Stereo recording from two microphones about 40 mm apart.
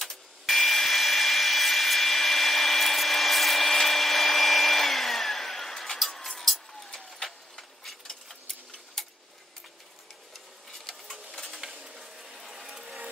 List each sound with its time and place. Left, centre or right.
0.0 s tools: centre
6.9 s vehicle: centre
10.3 s a sound: centre
12.4 s ratchet: centre
12.6 s ratchet: centre